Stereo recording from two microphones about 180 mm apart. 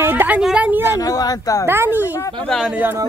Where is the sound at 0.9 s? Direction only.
20° left (ahead or behind).